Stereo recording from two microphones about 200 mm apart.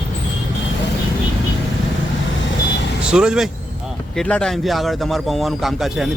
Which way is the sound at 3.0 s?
5° right (ahead or behind).